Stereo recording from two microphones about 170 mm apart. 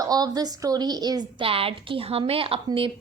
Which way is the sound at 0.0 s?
20° right (ahead or behind).